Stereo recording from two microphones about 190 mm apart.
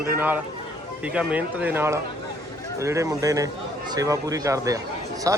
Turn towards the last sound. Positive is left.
turn(degrees=-15)  # may be behind; listen again after turning